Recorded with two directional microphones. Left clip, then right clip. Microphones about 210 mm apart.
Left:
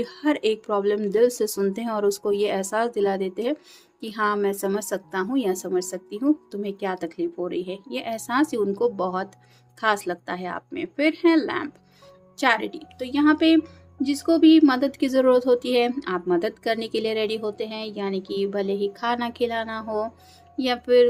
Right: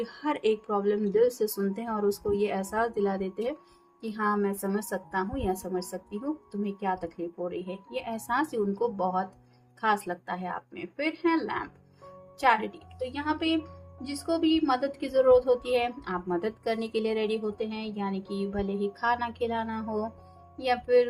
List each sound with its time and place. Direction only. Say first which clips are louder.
0.0 s a woman's voice: left 5 dB; 35° left (ahead or behind)